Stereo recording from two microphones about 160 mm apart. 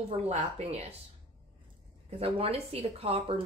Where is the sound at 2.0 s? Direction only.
40° right (ahead or behind).